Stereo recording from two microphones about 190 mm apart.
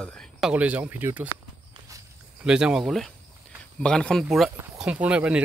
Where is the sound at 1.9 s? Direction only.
15° right (ahead or behind).